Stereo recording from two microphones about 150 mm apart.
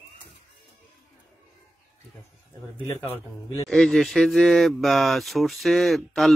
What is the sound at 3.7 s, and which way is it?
Speech, 5° left (ahead or behind).